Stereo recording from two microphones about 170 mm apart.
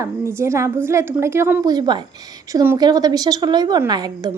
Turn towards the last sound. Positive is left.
turn(degrees=-25)  # may be behind; listen again after turning